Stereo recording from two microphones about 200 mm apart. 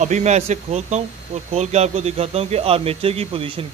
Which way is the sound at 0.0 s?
35° right (ahead or behind).